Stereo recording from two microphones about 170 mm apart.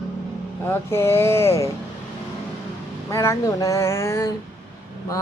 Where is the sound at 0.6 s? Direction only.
15° left (ahead or behind).